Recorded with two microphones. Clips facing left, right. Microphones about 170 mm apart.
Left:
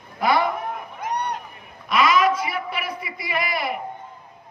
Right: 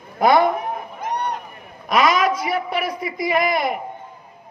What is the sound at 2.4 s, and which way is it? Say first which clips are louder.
Speech: right 5 dB; 40° right (ahead or behind).